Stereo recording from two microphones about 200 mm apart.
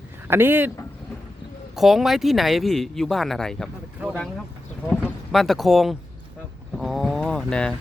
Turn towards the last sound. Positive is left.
turn(degrees=5)  # may be behind; listen again after turning